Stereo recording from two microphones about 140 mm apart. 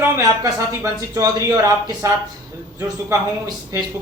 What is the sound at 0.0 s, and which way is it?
Speech, 20° right (ahead or behind).